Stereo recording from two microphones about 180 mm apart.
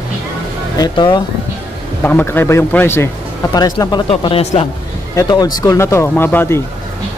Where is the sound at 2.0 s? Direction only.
10° left (ahead or behind); by 4.6 s 30° left (ahead or behind).